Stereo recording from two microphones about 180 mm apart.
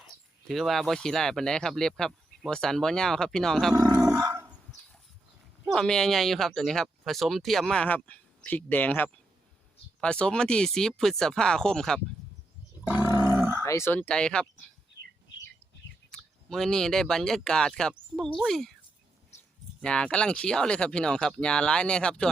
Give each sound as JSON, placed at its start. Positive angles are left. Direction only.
{"t": 0.4, "sound": "speech", "side_deg": 0}
{"t": 3.8, "sound": "dog", "side_deg": -20}
{"t": 5.6, "sound": "speech", "side_deg": 5}
{"t": 13.0, "sound": "grunt", "side_deg": 20}
{"t": 13.2, "sound": "a sound", "side_deg": -10}
{"t": 13.6, "sound": "speech", "side_deg": 15}
{"t": 16.1, "sound": "speech", "side_deg": 0}
{"t": 19.8, "sound": "speech", "side_deg": 5}